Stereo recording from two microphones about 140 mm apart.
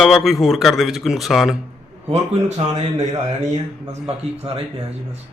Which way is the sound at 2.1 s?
50° right (ahead or behind).